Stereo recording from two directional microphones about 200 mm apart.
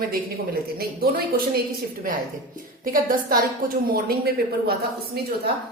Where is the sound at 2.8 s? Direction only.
45° right (ahead or behind).